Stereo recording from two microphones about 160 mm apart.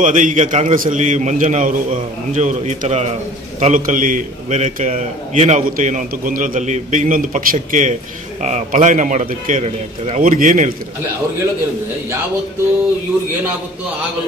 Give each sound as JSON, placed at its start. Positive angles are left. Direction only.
{"t": 0.0, "sound": "a man's voice", "side_deg": -55}
{"t": 10.2, "sound": "a man's voice", "side_deg": -55}